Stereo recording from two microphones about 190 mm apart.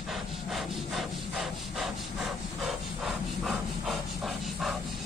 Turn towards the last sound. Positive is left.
turn(degrees=0)  # may be behind; listen again after turning